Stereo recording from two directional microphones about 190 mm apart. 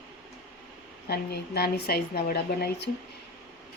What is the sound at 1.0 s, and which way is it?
A woman's voice, 55° left (ahead or behind).